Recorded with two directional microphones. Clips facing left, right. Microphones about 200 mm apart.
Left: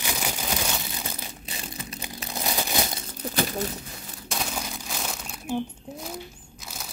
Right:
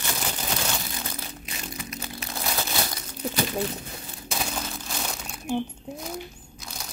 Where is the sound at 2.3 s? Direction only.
20° left (ahead or behind).